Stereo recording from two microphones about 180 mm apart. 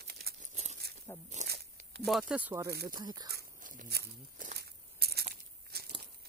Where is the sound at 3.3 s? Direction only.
55° right (ahead or behind).